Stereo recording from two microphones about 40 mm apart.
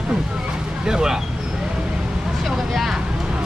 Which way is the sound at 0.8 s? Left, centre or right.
Centre.